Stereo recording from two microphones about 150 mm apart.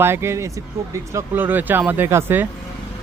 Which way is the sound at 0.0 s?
15° right (ahead or behind).